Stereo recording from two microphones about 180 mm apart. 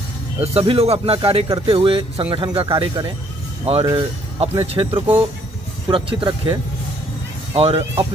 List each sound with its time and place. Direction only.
0.4 s speech: 35° right (ahead or behind)
7.5 s speech: 30° right (ahead or behind)